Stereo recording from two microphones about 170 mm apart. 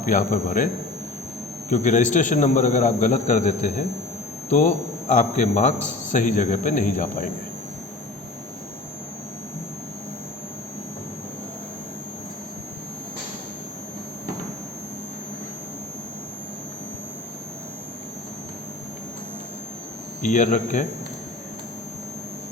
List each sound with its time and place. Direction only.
0.0 s a man's voice: 50° left (ahead or behind)
1.7 s a man's voice: 45° left (ahead or behind)
20.2 s a man's voice: 45° left (ahead or behind)